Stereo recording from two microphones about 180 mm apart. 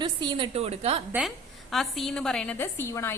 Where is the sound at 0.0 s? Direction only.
25° right (ahead or behind).